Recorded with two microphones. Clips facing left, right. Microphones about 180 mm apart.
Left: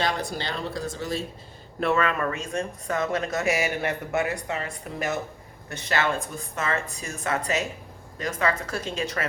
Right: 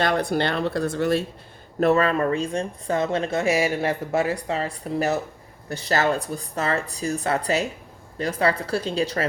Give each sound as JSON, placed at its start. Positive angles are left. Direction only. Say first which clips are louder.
{"t": 0.0, "sound": "speech", "louder": "right 6 dB", "side_deg": -55}
{"t": 1.8, "sound": "speech", "louder": "right 5 dB", "side_deg": -35}